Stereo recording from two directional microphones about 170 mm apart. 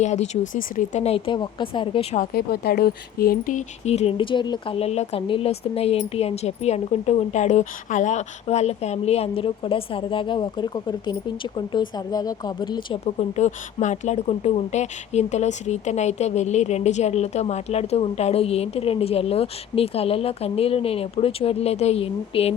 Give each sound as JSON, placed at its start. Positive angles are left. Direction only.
{"t": 0.0, "sound": "speech", "side_deg": 45}
{"t": 2.3, "sound": "speech", "side_deg": 65}
{"t": 13.1, "sound": "speech", "side_deg": 40}